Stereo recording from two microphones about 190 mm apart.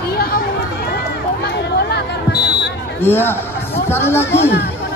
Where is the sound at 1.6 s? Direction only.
60° left (ahead or behind).